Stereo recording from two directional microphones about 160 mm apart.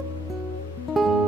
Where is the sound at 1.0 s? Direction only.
Centre (ahead or behind).